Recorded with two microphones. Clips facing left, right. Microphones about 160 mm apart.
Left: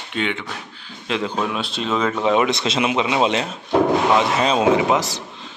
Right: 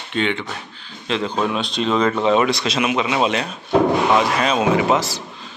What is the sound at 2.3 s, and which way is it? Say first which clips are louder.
Speech: right 1 dB; 20° left (ahead or behind).